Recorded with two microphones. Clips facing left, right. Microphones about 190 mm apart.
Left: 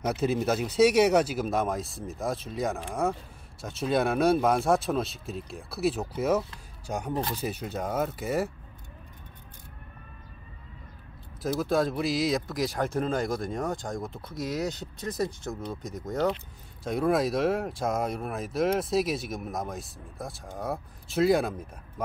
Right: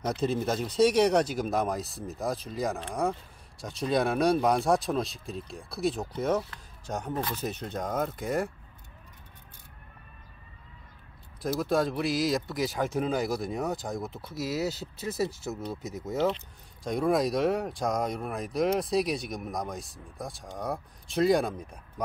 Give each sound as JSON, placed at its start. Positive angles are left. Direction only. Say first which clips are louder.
{"t": 0.0, "sound": "speech", "louder": "left 2 dB", "side_deg": 5}
{"t": 11.4, "sound": "speech", "louder": "left 1 dB", "side_deg": 0}